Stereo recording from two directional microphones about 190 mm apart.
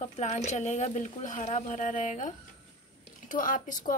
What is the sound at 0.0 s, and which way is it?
A woman's voice, 35° left (ahead or behind).